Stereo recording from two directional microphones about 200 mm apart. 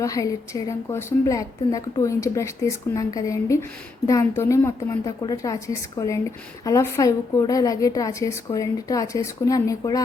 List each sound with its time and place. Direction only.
0.0 s a woman's voice: 15° left (ahead or behind)